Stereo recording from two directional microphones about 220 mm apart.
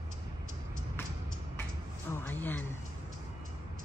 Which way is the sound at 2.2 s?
10° left (ahead or behind).